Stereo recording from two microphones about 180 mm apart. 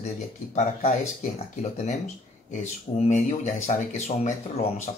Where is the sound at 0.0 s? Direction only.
40° left (ahead or behind).